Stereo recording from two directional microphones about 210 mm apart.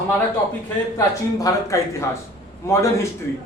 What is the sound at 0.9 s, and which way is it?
A woman's voice, 15° left (ahead or behind).